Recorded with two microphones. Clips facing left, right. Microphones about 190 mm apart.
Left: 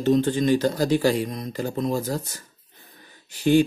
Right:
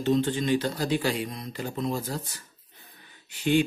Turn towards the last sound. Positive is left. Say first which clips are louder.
# left 5 dB
turn(degrees=40)  # may be behind; listen again after turning